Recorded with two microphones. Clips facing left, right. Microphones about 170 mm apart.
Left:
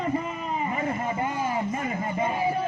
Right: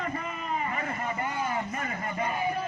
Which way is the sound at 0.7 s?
20° left (ahead or behind).